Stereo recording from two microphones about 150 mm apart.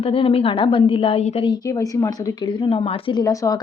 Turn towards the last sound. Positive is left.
turn(degrees=20)  # may be behind; listen again after turning